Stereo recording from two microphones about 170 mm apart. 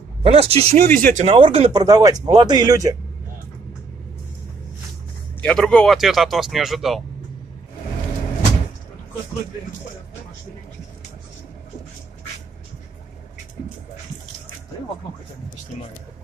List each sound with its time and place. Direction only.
0.2 s speech: 35° right (ahead or behind)
1.7 s speech: 20° right (ahead or behind)
5.4 s speech: 5° left (ahead or behind)